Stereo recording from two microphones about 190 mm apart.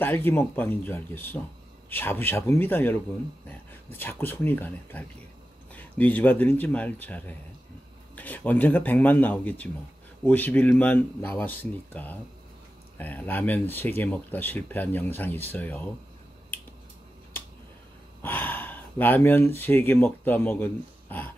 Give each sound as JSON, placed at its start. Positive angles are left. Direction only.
{"t": 0.0, "sound": "speech", "side_deg": 10}
{"t": 18.2, "sound": "speech", "side_deg": 10}